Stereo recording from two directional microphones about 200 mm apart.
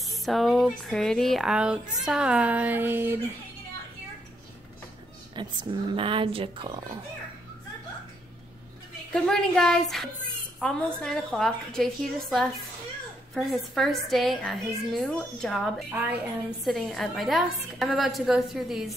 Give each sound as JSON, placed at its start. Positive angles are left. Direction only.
{"t": 0.0, "sound": "speech", "side_deg": 0}
{"t": 5.3, "sound": "a woman's voice", "side_deg": -25}
{"t": 9.1, "sound": "speech", "side_deg": 5}